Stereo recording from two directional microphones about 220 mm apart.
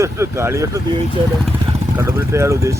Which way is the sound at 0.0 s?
10° right (ahead or behind).